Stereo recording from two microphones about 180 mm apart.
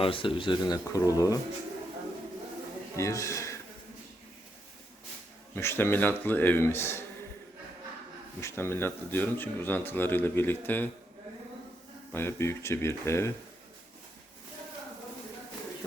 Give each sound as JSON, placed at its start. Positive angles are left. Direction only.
{"t": 0.0, "sound": "speech", "side_deg": 30}
{"t": 2.9, "sound": "speech", "side_deg": 15}
{"t": 5.5, "sound": "speech", "side_deg": 15}
{"t": 8.4, "sound": "speech", "side_deg": 15}
{"t": 12.1, "sound": "speech", "side_deg": 15}